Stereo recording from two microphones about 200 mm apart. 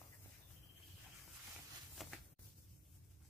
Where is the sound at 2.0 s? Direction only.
Centre (ahead or behind).